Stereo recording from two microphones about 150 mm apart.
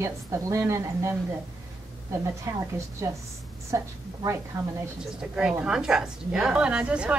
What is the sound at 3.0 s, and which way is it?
A woman's voice, 20° right (ahead or behind).